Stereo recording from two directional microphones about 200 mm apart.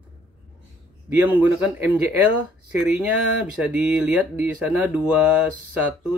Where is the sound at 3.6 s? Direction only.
5° right (ahead or behind).